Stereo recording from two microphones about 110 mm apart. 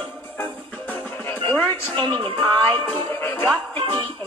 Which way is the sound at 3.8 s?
50° right (ahead or behind).